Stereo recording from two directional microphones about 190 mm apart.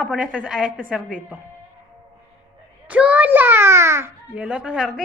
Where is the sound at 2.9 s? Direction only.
5° right (ahead or behind).